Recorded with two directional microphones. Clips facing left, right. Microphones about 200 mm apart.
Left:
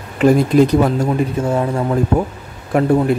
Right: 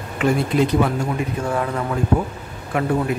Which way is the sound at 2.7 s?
40° left (ahead or behind).